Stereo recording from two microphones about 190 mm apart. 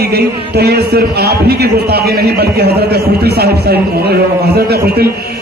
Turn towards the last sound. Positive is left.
turn(degrees=-55)  # may be behind; listen again after turning